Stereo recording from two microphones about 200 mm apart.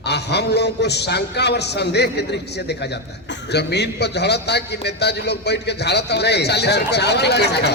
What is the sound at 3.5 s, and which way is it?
Speech, 55° left (ahead or behind).